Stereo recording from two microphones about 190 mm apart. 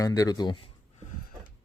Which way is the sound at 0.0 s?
20° left (ahead or behind).